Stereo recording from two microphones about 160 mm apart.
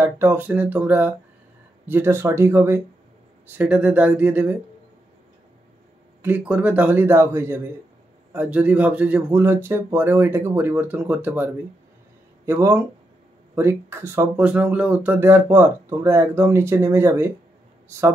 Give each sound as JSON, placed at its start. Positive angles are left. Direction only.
{"t": 0.0, "sound": "speech", "side_deg": -15}
{"t": 6.2, "sound": "speech", "side_deg": -10}